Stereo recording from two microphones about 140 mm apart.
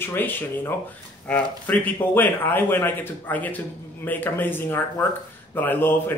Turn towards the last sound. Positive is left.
turn(degrees=15)  # may be behind; listen again after turning